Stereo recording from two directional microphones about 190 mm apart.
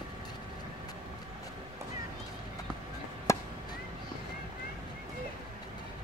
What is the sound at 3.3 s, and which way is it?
Chop, 15° left (ahead or behind).